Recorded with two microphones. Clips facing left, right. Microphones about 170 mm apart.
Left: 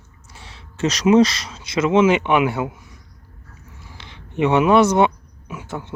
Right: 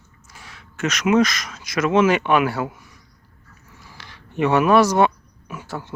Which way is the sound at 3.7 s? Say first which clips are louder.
Left 1 dB; 25° left (ahead or behind).